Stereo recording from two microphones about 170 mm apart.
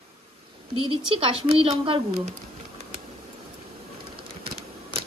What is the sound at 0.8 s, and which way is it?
Speech, 30° right (ahead or behind).